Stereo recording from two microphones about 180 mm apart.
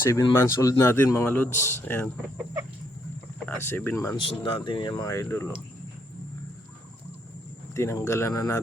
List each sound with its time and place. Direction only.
0.1 s speech: 20° left (ahead or behind)
3.4 s speech: 10° left (ahead or behind)
4.2 s speech: 30° left (ahead or behind)
7.7 s speech: 15° left (ahead or behind)